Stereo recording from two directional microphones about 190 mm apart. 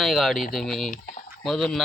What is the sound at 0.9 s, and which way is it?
Speech, 45° left (ahead or behind).